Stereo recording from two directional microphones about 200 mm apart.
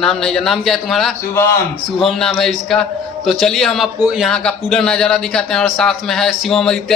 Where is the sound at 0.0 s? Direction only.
Centre (ahead or behind).